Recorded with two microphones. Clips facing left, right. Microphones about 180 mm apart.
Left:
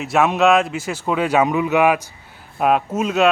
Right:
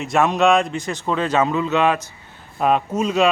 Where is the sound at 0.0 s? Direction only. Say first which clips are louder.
Left 1 dB; 5° left (ahead or behind).